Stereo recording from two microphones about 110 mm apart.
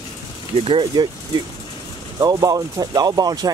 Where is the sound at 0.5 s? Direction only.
55° right (ahead or behind).